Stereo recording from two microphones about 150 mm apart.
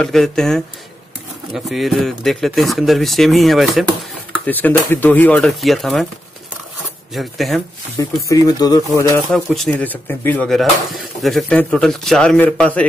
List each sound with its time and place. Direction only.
0.0 s speech: centre (ahead or behind)
4.5 s speech: 10° left (ahead or behind)
7.2 s speech: centre (ahead or behind)
8.0 s speech: 25° left (ahead or behind)
9.3 s speech: centre (ahead or behind)